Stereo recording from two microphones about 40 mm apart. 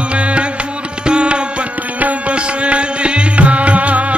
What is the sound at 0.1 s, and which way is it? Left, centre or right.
Music, right.